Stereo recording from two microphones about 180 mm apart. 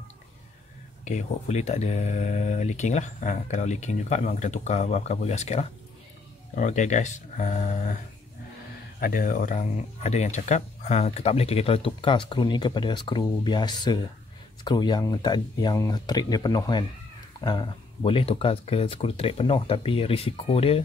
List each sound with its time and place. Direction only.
1.0 s speech: 40° left (ahead or behind)
9.0 s speech: 50° left (ahead or behind); by 20.8 s 30° left (ahead or behind)